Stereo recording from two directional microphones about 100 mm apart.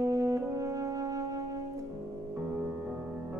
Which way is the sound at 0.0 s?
30° right (ahead or behind).